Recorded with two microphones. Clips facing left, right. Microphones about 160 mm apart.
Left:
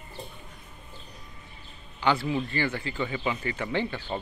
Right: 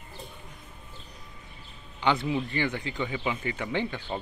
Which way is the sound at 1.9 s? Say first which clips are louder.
Left 1 dB; 20° right (ahead or behind).